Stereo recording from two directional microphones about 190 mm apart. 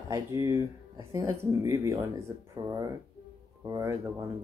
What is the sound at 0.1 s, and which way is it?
Speech, 15° right (ahead or behind).